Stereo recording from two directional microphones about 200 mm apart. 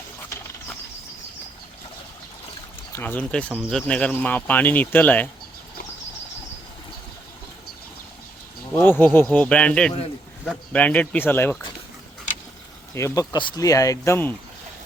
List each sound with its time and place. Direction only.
2.9 s speech: 10° left (ahead or behind)
8.7 s speech: 10° left (ahead or behind)
12.9 s speech: 15° left (ahead or behind)